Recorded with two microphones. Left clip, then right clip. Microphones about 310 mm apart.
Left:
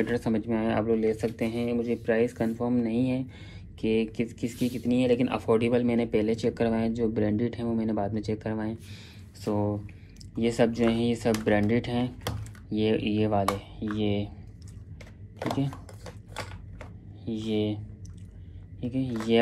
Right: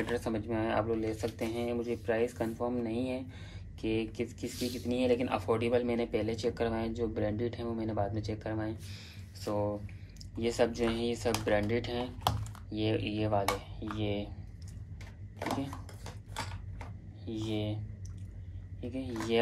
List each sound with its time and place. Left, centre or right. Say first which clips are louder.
0.1 s speech: left 5 dB; left
17.2 s speech: left 7 dB; left
18.8 s speech: left 6 dB; left